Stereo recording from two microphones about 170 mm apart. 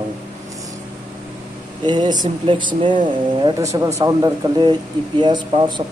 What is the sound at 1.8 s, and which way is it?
Speech, 25° right (ahead or behind).